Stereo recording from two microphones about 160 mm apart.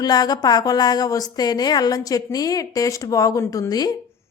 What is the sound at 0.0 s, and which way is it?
Speech, 25° left (ahead or behind).